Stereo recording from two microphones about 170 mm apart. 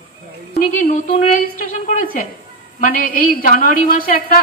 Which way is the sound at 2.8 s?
55° left (ahead or behind).